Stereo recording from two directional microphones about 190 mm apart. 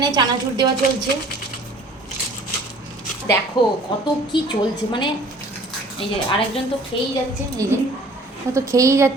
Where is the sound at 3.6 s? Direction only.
25° left (ahead or behind).